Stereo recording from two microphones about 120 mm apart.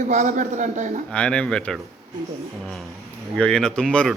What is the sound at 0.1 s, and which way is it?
Speech, 90° right.